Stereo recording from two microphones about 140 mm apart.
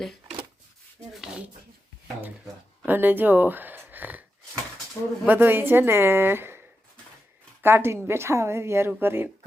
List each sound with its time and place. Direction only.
0.0 s a sound: centre (ahead or behind)
2.8 s speech: 15° right (ahead or behind)
5.2 s a woman's voice: 15° right (ahead or behind)